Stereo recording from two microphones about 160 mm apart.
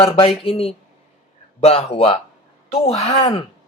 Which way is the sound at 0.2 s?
35° left (ahead or behind).